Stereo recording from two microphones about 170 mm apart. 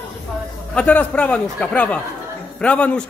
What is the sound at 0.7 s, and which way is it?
Speech, 10° left (ahead or behind).